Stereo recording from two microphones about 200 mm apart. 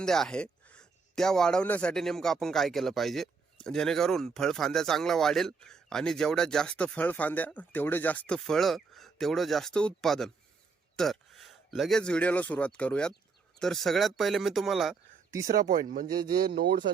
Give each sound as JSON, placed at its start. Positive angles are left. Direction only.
{"t": 0.0, "sound": "speech", "side_deg": 5}
{"t": 15.7, "sound": "speech", "side_deg": -40}
{"t": 16.0, "sound": "speech", "side_deg": -20}